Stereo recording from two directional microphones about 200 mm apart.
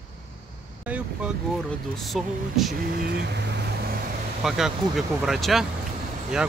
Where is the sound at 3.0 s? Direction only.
60° right (ahead or behind).